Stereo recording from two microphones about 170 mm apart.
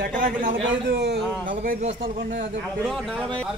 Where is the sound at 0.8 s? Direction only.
90° right.